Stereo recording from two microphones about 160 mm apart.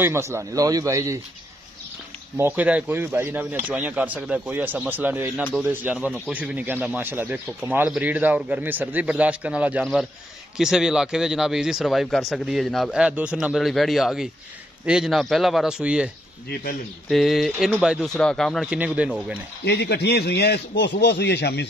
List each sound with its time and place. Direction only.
0.0 s a man's voice: 15° right (ahead or behind)
2.3 s speech: 10° right (ahead or behind)
17.1 s speech: centre (ahead or behind)
19.6 s a man's voice: 90° left